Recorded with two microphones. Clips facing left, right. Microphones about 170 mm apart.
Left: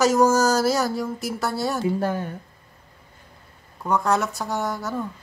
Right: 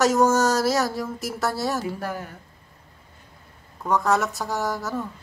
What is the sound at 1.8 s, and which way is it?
Speech, 25° left (ahead or behind).